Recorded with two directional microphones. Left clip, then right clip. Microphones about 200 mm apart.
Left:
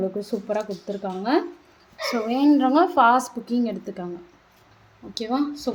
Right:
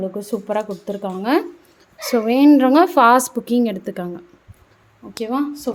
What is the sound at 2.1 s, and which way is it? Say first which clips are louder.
A woman's voice: right 7 dB; 50° right (ahead or behind).